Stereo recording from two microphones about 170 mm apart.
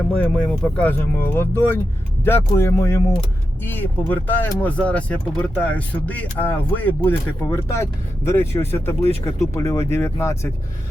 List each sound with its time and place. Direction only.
0.1 s speech: 5° left (ahead or behind)